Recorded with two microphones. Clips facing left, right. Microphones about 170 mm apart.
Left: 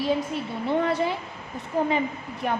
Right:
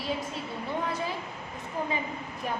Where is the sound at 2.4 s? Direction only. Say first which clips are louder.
Left 6 dB; 65° left (ahead or behind).